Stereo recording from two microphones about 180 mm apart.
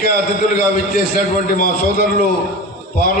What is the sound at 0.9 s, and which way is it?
A man's voice, 50° left (ahead or behind).